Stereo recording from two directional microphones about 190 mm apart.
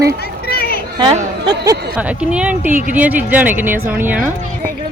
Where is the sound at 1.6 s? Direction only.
10° right (ahead or behind).